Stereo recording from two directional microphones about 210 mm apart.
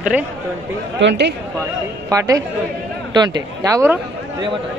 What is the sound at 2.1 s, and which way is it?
Speech, 15° right (ahead or behind).